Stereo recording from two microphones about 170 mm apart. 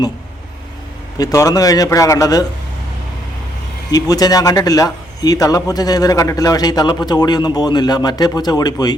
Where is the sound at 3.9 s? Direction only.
20° left (ahead or behind).